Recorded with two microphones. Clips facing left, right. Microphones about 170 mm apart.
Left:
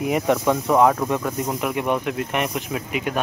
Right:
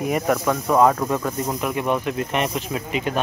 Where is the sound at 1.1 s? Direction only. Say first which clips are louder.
Even; 15° left (ahead or behind).